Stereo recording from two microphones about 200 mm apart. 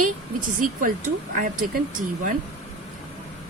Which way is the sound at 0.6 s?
45° right (ahead or behind).